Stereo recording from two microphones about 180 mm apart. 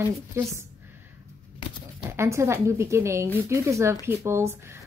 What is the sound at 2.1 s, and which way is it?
A woman's voice, 15° right (ahead or behind).